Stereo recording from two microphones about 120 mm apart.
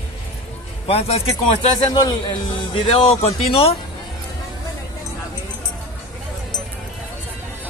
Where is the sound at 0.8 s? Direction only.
55° left (ahead or behind).